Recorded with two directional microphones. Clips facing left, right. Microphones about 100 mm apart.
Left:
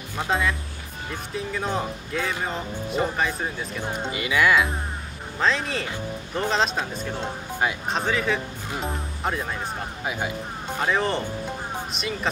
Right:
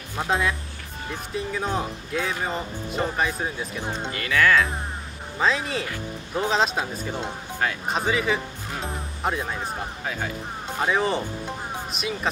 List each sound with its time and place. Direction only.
0.2 s speech: centre (ahead or behind)
3.9 s speech: 15° left (ahead or behind)
5.4 s speech: 5° right (ahead or behind)
10.0 s speech: 15° left (ahead or behind)
10.8 s speech: 5° right (ahead or behind)